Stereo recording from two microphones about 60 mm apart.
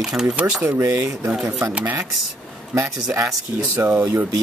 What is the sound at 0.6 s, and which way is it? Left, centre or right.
Speech, right.